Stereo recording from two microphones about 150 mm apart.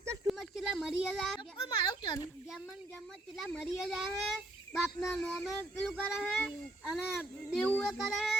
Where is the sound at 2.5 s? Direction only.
Centre (ahead or behind).